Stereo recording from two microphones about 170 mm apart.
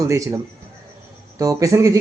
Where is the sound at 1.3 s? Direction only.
20° right (ahead or behind).